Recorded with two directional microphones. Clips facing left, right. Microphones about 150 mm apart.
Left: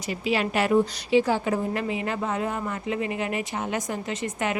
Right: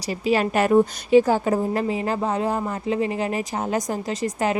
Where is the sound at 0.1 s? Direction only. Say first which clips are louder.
Right 4 dB; 40° right (ahead or behind).